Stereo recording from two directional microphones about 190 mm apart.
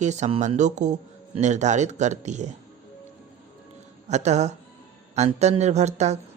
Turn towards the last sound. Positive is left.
turn(degrees=-35)  # may be behind; listen again after turning